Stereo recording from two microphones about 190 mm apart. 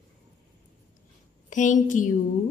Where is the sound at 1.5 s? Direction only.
40° left (ahead or behind).